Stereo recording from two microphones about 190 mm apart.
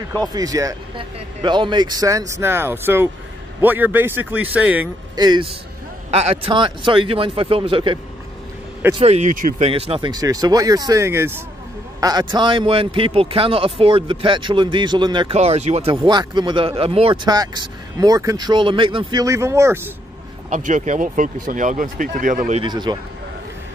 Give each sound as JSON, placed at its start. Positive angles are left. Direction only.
{"t": 0.3, "sound": "speech", "side_deg": -20}
{"t": 5.1, "sound": "a man's voice", "side_deg": -20}
{"t": 9.0, "sound": "speech", "side_deg": -35}
{"t": 9.7, "sound": "a man's voice", "side_deg": -30}
{"t": 15.3, "sound": "speech", "side_deg": -35}
{"t": 16.0, "sound": "a man's voice", "side_deg": -20}
{"t": 20.4, "sound": "speech", "side_deg": -40}
{"t": 22.6, "sound": "a man's voice", "side_deg": -20}